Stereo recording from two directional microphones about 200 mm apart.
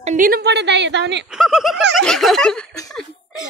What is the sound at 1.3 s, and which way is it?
Speech, centre (ahead or behind).